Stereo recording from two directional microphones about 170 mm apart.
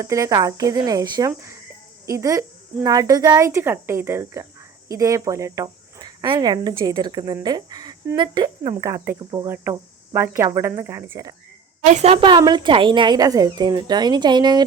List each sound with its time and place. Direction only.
0.0 s a woman's voice: 20° right (ahead or behind)
1.3 s cricket: 15° right (ahead or behind)
2.0 s a woman's voice: 20° right (ahead or behind)
2.8 s cricket: 20° right (ahead or behind)
4.9 s a woman's voice: 20° right (ahead or behind)
8.7 s cricket: 15° right (ahead or behind)
11.9 s a woman's voice: 40° right (ahead or behind)
12.2 s a woman's voice: 25° right (ahead or behind)